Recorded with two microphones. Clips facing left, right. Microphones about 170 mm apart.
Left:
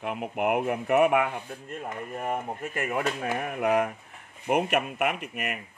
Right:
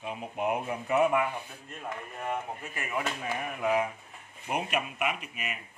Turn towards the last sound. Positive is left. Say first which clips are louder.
# left 5 dB
turn(degrees=65)  # may be behind; listen again after turning